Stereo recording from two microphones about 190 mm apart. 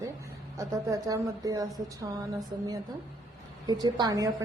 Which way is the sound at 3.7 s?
20° right (ahead or behind).